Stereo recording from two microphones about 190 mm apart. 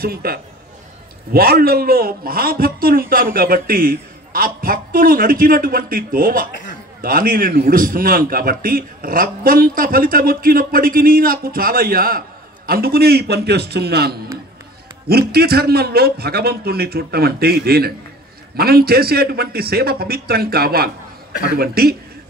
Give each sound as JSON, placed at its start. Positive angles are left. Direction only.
{"t": 0.0, "sound": "a man's voice", "side_deg": -55}